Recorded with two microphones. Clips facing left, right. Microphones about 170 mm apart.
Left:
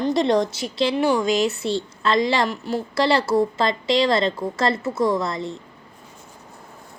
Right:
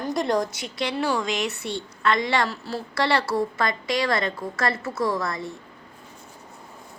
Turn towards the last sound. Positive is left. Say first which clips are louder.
# left 4 dB
turn(degrees=25)  # may be behind; listen again after turning